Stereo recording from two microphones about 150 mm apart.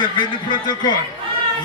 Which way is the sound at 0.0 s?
30° left (ahead or behind).